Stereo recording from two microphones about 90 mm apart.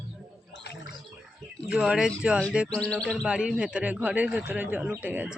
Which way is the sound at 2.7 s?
10° left (ahead or behind).